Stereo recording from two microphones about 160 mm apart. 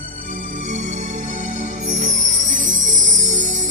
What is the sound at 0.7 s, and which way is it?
Music, 50° right (ahead or behind).